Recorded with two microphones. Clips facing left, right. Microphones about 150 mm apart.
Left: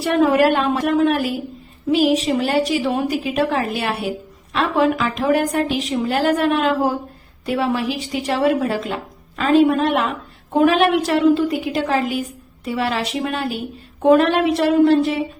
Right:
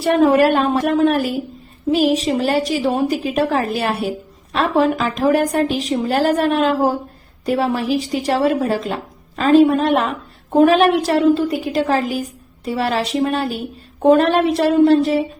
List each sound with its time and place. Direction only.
0.0 s a woman's voice: 40° right (ahead or behind)